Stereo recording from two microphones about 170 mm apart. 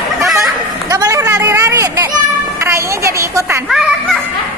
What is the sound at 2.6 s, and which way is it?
A woman's voice, 15° right (ahead or behind).